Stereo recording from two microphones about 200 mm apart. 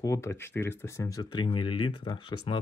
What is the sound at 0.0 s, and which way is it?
Speech, 15° left (ahead or behind).